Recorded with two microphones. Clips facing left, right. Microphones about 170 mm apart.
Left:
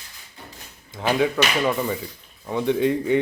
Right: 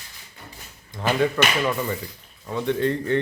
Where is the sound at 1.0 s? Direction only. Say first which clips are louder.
Left 1 dB; 10° left (ahead or behind).